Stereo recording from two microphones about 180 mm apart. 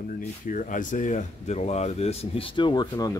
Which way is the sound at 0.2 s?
45° left (ahead or behind).